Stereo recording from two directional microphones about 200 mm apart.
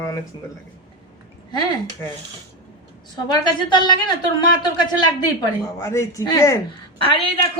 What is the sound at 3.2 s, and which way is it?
A woman's voice, 20° left (ahead or behind).